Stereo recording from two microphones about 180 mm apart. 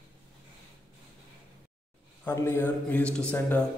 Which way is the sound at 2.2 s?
15° left (ahead or behind).